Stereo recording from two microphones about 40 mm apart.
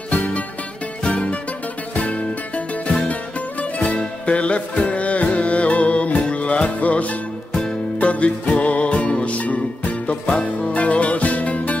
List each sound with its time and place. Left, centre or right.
0.1 s music: left